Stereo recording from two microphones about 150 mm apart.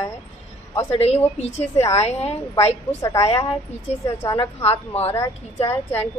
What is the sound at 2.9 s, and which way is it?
Speech, 20° left (ahead or behind).